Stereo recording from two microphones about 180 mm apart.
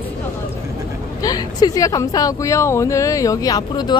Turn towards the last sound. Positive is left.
turn(degrees=25)  # may be behind; listen again after turning